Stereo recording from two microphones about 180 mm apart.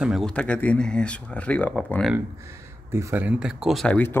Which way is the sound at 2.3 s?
15° right (ahead or behind).